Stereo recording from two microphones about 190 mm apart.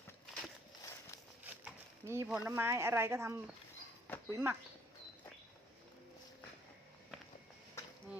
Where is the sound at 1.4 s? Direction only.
10° right (ahead or behind).